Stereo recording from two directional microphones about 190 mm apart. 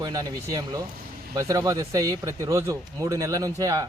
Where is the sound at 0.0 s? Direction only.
20° right (ahead or behind).